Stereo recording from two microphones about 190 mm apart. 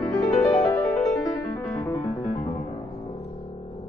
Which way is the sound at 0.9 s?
Centre (ahead or behind).